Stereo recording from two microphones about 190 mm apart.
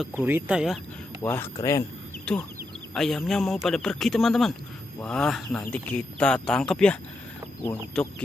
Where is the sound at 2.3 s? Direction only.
5° left (ahead or behind).